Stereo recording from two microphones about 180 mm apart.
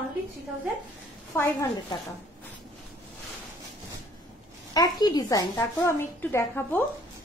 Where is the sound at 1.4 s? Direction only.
15° left (ahead or behind).